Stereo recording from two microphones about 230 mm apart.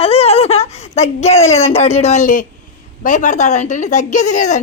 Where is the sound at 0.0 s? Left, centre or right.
Left.